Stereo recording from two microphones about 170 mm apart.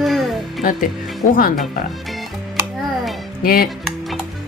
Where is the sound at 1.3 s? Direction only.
55° left (ahead or behind).